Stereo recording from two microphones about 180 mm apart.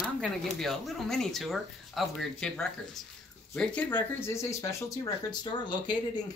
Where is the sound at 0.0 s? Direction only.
Centre (ahead or behind).